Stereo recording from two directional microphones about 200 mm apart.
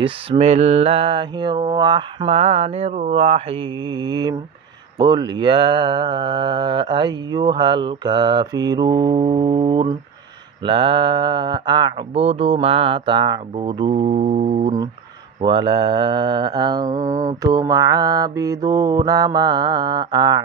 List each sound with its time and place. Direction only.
0.0 s speech: 30° right (ahead or behind)
1.7 s a sound: 20° right (ahead or behind)
4.9 s speech: 20° right (ahead or behind)